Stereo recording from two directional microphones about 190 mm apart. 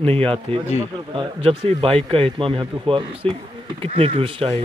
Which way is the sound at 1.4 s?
30° right (ahead or behind).